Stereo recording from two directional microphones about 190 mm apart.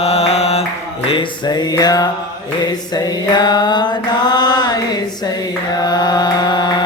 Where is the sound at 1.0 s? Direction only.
25° left (ahead or behind).